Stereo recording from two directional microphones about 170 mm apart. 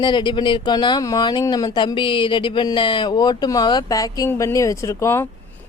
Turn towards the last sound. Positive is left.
turn(degrees=15)  # may be behind; listen again after turning